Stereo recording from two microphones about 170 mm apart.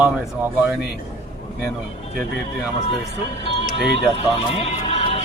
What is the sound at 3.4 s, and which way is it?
Speech, 35° left (ahead or behind).